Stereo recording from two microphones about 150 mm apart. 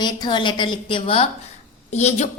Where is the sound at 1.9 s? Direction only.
50° left (ahead or behind).